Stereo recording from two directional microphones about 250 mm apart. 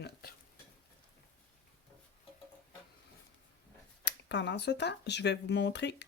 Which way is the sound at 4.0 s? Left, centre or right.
Left.